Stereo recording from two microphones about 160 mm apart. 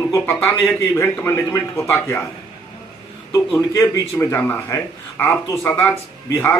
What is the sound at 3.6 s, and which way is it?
Speech, 20° left (ahead or behind).